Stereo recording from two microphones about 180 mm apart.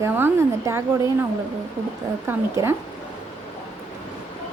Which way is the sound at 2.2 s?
15° right (ahead or behind).